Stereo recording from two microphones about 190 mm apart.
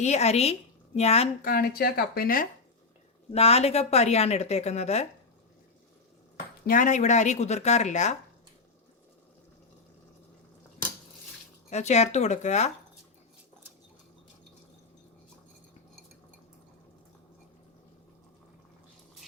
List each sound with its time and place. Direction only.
0.0 s speech: 35° left (ahead or behind)
1.4 s speech: 50° left (ahead or behind)
3.3 s speech: 30° left (ahead or behind)
6.7 s speech: 45° left (ahead or behind)
11.7 s speech: 35° left (ahead or behind)